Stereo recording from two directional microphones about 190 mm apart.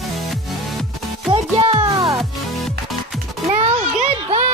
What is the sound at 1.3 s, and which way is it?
Music, 25° right (ahead or behind).